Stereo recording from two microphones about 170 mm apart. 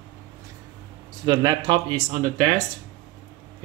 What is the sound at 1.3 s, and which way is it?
Speech, 25° right (ahead or behind).